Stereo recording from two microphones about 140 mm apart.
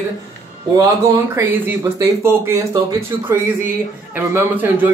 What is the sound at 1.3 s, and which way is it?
Speech, 15° right (ahead or behind).